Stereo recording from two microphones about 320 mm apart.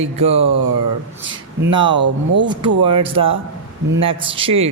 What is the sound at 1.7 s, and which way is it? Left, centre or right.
Speech, centre.